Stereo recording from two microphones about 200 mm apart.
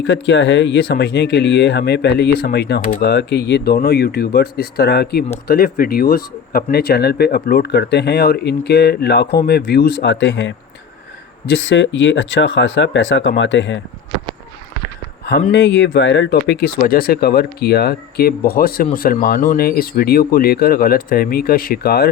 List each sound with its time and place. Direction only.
0.1 s speech: 60° left (ahead or behind)
15.5 s speech: 60° left (ahead or behind)